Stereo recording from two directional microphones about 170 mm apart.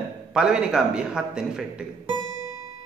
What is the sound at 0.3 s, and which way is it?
A man's voice, 5° right (ahead or behind).